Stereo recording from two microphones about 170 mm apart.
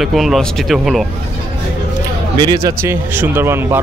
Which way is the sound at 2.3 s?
20° right (ahead or behind).